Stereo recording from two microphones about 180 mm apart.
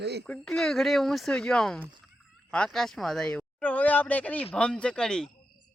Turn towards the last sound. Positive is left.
turn(degrees=5)  # may be behind; listen again after turning